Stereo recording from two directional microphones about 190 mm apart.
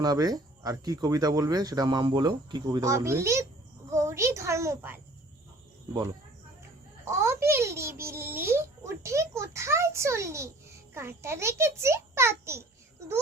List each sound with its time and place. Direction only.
0.0 s speech: 20° right (ahead or behind)
3.8 s a sound: 15° right (ahead or behind)
7.0 s a child's voice: 15° right (ahead or behind)